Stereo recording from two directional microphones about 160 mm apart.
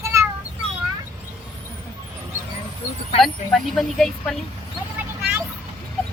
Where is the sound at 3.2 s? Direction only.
Centre (ahead or behind).